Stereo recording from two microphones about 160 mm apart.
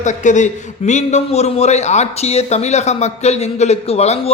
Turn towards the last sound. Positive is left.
turn(degrees=40)  # may be behind; listen again after turning